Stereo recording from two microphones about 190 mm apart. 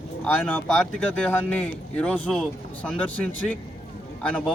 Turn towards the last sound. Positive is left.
turn(degrees=5)  # may be behind; listen again after turning